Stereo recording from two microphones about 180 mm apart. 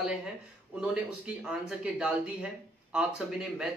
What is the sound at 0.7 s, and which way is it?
A man's voice, 5° right (ahead or behind).